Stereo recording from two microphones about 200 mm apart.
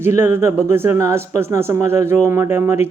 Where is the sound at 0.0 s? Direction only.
15° right (ahead or behind).